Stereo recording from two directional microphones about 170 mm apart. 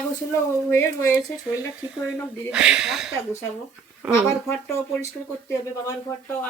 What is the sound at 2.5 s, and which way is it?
Speech, 5° right (ahead or behind).